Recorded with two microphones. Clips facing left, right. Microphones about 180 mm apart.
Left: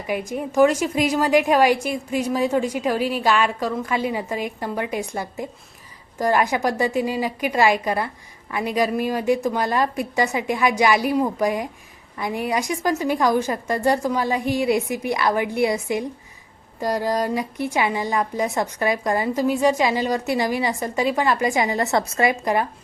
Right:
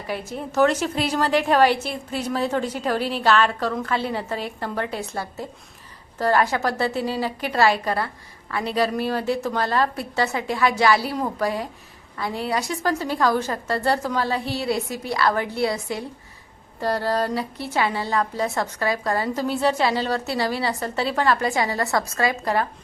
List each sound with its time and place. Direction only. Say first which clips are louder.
0.1 s a woman's voice: left 4 dB; 15° left (ahead or behind)